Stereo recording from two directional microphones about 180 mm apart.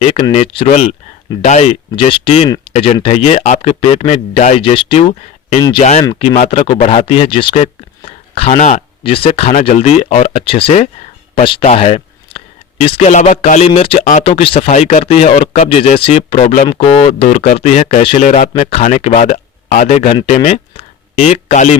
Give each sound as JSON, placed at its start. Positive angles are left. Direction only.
{"t": 0.0, "sound": "speech", "side_deg": 30}
{"t": 6.5, "sound": "speech", "side_deg": 30}
{"t": 17.2, "sound": "speech", "side_deg": 50}